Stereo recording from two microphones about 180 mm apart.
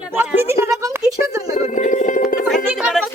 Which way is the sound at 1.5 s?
45° left (ahead or behind).